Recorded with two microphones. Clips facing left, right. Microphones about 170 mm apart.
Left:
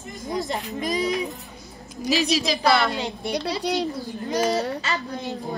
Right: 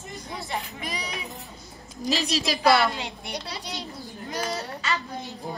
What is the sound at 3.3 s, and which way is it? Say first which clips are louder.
Speech: left 14 dB; 70° left (ahead or behind).